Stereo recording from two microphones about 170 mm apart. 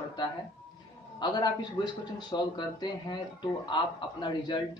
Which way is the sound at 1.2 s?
25° left (ahead or behind).